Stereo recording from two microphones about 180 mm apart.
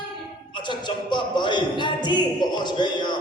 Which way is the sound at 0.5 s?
25° left (ahead or behind).